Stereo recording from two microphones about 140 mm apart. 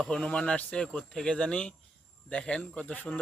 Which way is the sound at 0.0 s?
5° left (ahead or behind).